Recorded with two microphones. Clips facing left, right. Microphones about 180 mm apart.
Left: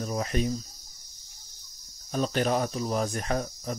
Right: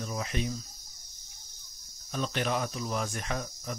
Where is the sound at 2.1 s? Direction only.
40° left (ahead or behind).